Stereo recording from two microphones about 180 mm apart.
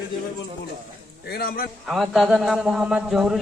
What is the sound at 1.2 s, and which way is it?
Speech, 60° left (ahead or behind).